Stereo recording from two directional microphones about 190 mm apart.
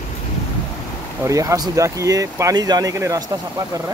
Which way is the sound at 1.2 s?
15° right (ahead or behind).